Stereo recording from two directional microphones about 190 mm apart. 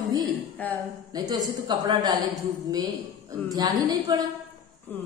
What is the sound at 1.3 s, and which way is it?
Speech, 20° right (ahead or behind).